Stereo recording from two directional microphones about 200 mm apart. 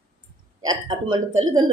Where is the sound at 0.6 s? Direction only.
20° right (ahead or behind).